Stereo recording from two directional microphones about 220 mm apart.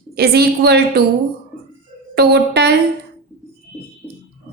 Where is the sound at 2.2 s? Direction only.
50° right (ahead or behind).